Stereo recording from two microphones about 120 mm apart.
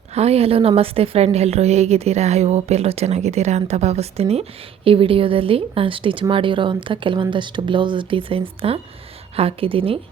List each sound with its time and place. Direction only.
0.1 s a woman's voice: 60° right (ahead or behind)
4.9 s speech: 50° right (ahead or behind)